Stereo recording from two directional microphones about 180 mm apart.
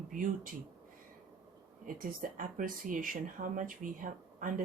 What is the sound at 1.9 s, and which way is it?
Speech, 50° right (ahead or behind).